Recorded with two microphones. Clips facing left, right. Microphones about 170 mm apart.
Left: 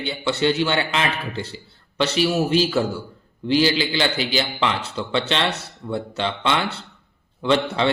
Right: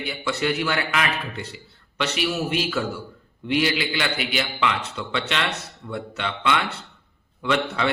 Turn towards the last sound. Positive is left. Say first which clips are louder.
# left 4 dB
turn(degrees=30)  # may be behind; listen again after turning